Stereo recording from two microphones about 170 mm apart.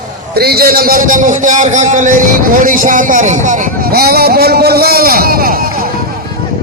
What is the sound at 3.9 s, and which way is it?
A man's voice, 65° right (ahead or behind).